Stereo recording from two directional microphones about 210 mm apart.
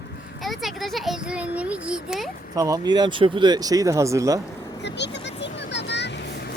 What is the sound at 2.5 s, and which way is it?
Speech, 15° right (ahead or behind).